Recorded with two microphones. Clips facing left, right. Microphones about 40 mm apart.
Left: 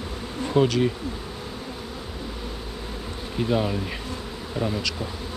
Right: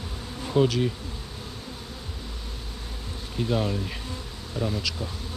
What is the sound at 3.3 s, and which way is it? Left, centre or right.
Bee, centre.